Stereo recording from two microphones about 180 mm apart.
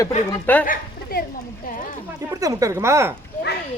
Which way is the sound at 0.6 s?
50° left (ahead or behind).